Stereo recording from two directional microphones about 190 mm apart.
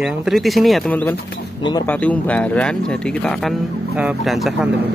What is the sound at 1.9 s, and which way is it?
Speech, 5° left (ahead or behind).